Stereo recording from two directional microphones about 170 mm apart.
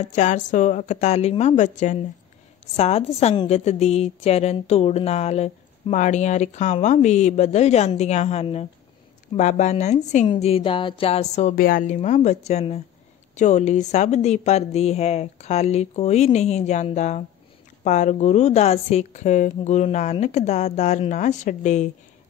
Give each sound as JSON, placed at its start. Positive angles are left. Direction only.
{"t": 0.0, "sound": "a woman's voice", "side_deg": 45}
{"t": 10.3, "sound": "speech", "side_deg": 30}
{"t": 11.5, "sound": "a woman's voice", "side_deg": 55}